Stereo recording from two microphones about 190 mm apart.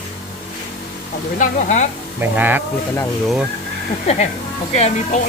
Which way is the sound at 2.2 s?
10° right (ahead or behind).